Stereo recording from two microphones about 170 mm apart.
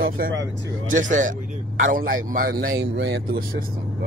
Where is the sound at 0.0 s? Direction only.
75° right (ahead or behind).